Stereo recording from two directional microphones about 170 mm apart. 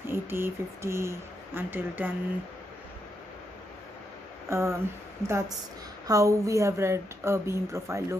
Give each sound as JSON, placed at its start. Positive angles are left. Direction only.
{"t": 0.1, "sound": "speech", "side_deg": -15}
{"t": 4.5, "sound": "speech", "side_deg": -15}